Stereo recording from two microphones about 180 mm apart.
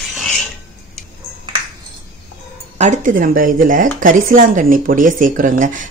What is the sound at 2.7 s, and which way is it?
Speech, 40° right (ahead or behind).